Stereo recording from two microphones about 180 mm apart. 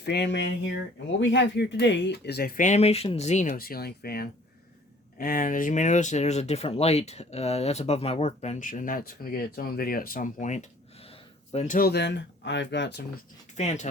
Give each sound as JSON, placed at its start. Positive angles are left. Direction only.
{"t": 0.0, "sound": "speech", "side_deg": 70}
{"t": 11.8, "sound": "speech", "side_deg": 65}
{"t": 13.6, "sound": "speech", "side_deg": 40}